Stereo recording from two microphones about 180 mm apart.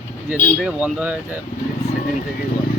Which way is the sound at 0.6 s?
5° right (ahead or behind).